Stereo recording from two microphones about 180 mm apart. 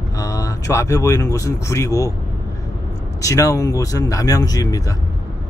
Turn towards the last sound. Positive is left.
turn(degrees=20)  # may be behind; listen again after turning